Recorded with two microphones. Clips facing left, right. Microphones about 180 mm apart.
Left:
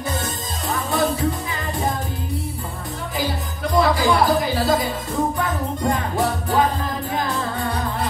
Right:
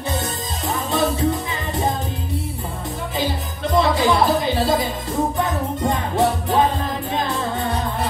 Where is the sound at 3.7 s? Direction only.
25° right (ahead or behind).